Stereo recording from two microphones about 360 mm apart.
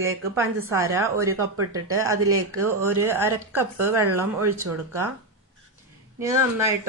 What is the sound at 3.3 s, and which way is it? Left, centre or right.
Speech, right.